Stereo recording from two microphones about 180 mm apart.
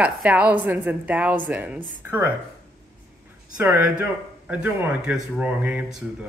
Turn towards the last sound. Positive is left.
turn(degrees=-5)  # may be behind; listen again after turning